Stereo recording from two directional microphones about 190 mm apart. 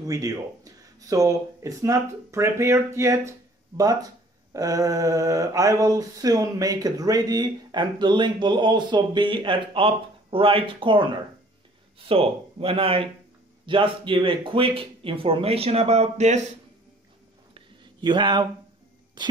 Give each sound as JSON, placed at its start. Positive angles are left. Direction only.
{"t": 0.0, "sound": "speech", "side_deg": -20}
{"t": 17.6, "sound": "a sound", "side_deg": -25}
{"t": 19.2, "sound": "speech", "side_deg": -25}